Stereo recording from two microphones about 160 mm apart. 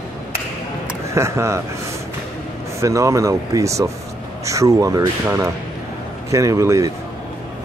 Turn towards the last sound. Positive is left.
turn(degrees=-20)  # may be behind; listen again after turning